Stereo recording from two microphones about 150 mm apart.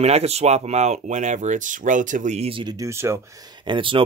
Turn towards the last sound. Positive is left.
turn(degrees=-35)  # may be behind; listen again after turning